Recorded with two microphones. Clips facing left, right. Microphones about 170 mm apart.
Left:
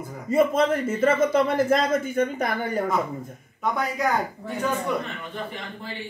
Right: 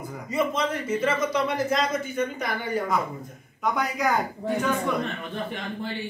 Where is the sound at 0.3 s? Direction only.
50° left (ahead or behind).